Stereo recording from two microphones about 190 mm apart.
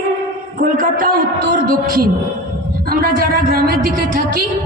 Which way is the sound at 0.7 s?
50° right (ahead or behind).